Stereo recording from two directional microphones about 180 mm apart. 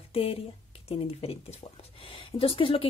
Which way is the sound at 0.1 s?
30° left (ahead or behind).